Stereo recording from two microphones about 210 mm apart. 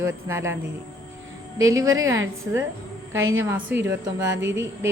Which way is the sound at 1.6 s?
15° right (ahead or behind).